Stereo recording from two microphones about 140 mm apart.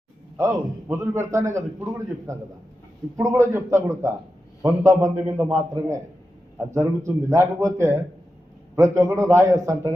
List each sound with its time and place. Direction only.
0.3 s a man's voice: 25° right (ahead or behind)
7.3 s a man's voice: 20° right (ahead or behind)